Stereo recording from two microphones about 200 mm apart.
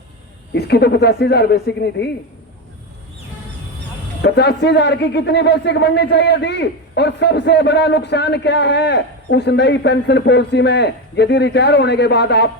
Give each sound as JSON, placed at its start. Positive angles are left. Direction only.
{"t": 0.5, "sound": "a man's voice", "side_deg": 55}
{"t": 4.2, "sound": "a man's voice", "side_deg": 55}